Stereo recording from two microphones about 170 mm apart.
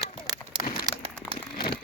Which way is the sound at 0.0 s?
20° right (ahead or behind).